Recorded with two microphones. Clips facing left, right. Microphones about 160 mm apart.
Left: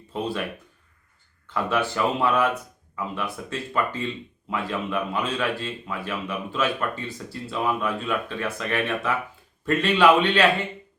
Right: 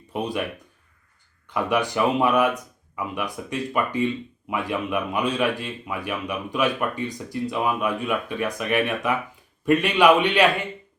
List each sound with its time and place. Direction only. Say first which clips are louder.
0.1 s speech: right 2 dB; 15° right (ahead or behind)
1.5 s speech: right 2 dB; 15° right (ahead or behind)